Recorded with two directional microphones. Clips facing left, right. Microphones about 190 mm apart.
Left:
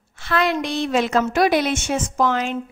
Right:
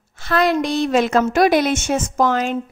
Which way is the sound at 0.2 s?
40° right (ahead or behind).